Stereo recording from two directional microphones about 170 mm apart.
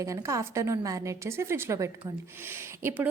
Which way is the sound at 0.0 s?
20° right (ahead or behind).